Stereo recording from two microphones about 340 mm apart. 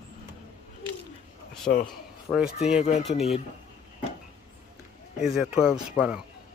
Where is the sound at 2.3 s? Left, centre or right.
Centre.